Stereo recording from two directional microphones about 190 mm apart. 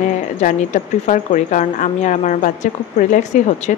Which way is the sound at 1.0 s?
40° left (ahead or behind).